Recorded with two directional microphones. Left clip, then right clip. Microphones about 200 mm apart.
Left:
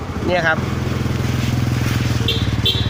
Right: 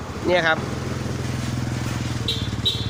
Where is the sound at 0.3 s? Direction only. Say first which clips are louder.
Left 2 dB; 20° right (ahead or behind).